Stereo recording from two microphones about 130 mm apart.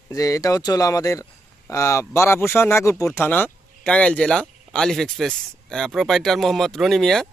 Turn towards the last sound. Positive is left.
turn(degrees=5)  # may be behind; listen again after turning